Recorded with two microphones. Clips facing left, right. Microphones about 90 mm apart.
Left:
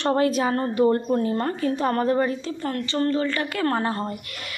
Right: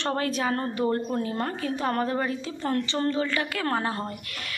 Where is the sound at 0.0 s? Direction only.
10° left (ahead or behind).